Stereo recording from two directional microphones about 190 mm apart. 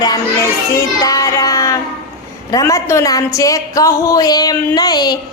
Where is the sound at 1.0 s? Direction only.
20° left (ahead or behind).